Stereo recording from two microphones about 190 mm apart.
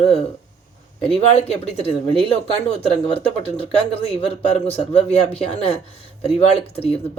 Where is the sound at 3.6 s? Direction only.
30° left (ahead or behind).